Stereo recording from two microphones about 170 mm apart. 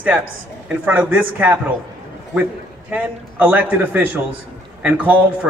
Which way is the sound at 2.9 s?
10° right (ahead or behind).